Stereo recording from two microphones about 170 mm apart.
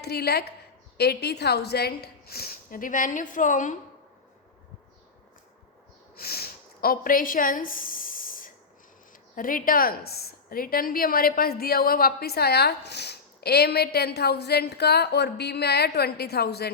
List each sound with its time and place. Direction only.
0.0 s a woman's voice: 70° left (ahead or behind); by 3.8 s 50° left (ahead or behind)
6.1 s a sound: 65° left (ahead or behind)
9.3 s a woman's voice: 55° left (ahead or behind); by 16.7 s 70° left (ahead or behind)